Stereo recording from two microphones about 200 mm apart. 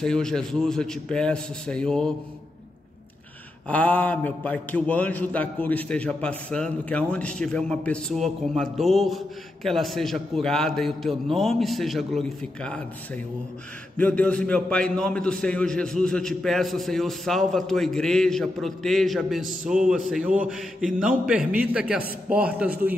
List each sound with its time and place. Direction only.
0.0 s a man's voice: 5° left (ahead or behind)
3.6 s a man's voice: 5° left (ahead or behind)